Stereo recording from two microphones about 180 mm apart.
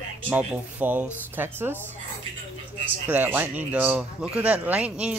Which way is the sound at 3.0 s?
10° right (ahead or behind).